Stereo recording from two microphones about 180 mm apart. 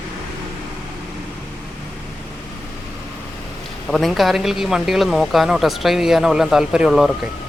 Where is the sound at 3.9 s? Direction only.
Centre (ahead or behind).